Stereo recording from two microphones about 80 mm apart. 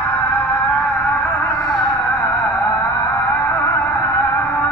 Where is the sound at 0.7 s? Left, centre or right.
Centre.